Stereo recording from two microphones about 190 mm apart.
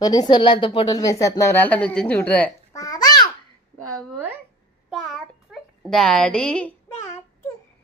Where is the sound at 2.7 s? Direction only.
20° left (ahead or behind).